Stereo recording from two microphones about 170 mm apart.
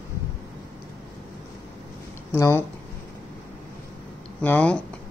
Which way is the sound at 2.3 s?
15° left (ahead or behind).